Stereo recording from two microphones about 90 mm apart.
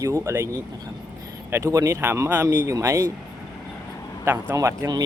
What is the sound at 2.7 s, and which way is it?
Speech, 35° right (ahead or behind).